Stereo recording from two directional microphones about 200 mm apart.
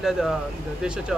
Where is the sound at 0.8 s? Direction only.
5° right (ahead or behind).